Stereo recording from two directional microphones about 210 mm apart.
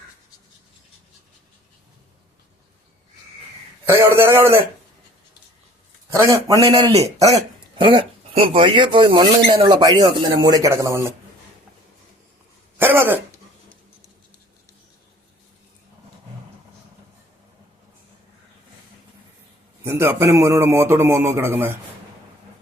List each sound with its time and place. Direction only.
3.8 s a man's voice: 10° right (ahead or behind)
6.1 s a man's voice: 15° right (ahead or behind)
12.7 s cough: 10° right (ahead or behind)
19.8 s a man's voice: 10° right (ahead or behind)